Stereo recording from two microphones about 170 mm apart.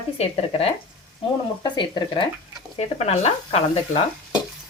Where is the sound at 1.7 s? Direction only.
25° left (ahead or behind).